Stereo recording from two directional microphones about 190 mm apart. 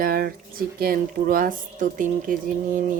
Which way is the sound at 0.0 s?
50° right (ahead or behind).